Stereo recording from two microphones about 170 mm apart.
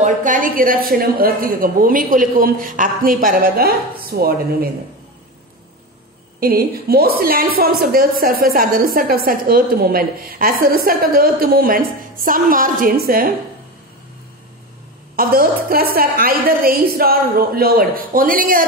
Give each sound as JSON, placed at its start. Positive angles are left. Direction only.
{"t": 0.0, "sound": "a woman's voice", "side_deg": -50}
{"t": 6.4, "sound": "a woman's voice", "side_deg": -65}
{"t": 15.1, "sound": "a woman's voice", "side_deg": -60}